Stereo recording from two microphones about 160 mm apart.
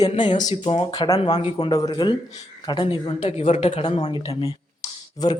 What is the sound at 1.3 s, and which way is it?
Speech, 40° left (ahead or behind).